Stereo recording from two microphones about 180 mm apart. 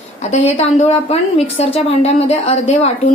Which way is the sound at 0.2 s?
40° left (ahead or behind).